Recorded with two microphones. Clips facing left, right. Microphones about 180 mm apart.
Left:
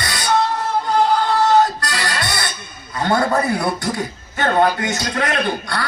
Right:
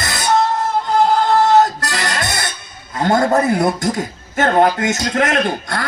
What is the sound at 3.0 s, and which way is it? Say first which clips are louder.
Speech: right 3 dB; 45° right (ahead or behind).